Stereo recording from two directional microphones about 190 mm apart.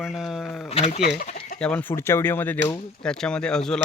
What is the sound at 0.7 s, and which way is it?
Speech, 35° left (ahead or behind).